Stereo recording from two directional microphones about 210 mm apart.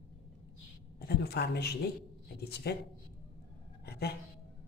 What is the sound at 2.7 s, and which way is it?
Speech, 50° left (ahead or behind).